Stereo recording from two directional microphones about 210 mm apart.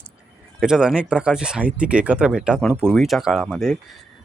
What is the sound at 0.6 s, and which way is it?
Speech, 5° right (ahead or behind).